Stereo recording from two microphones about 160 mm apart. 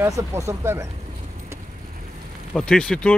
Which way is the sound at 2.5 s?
5° left (ahead or behind).